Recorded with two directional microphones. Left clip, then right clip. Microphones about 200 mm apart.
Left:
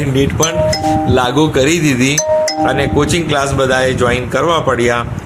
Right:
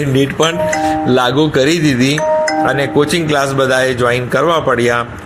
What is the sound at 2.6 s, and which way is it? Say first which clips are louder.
A man's voice: even; 15° right (ahead or behind).